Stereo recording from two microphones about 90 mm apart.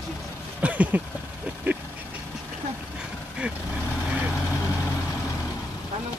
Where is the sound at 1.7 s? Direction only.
20° right (ahead or behind).